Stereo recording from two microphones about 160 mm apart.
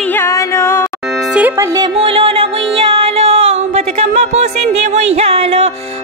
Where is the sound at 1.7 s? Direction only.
30° right (ahead or behind).